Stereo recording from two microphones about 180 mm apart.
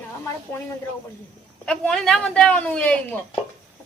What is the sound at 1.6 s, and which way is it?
Speech, 5° left (ahead or behind).